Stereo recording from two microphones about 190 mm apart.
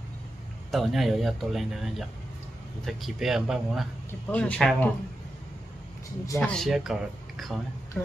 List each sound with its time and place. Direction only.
0.7 s speech: centre (ahead or behind)
6.2 s speech: 15° left (ahead or behind)
6.5 s speech: centre (ahead or behind)